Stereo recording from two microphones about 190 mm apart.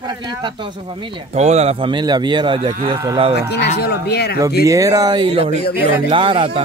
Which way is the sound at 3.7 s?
60° left (ahead or behind).